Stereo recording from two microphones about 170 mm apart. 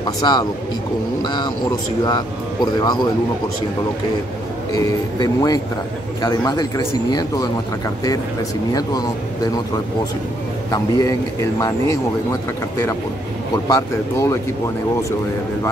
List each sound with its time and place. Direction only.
0.0 s speech: 25° left (ahead or behind)
4.7 s speech: 20° left (ahead or behind)
10.7 s speech: 20° left (ahead or behind)
13.7 s speech: 15° left (ahead or behind)